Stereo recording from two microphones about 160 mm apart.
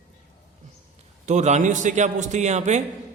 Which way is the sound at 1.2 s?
45° right (ahead or behind).